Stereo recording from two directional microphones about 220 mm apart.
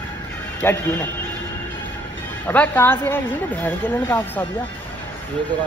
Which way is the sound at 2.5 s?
10° left (ahead or behind).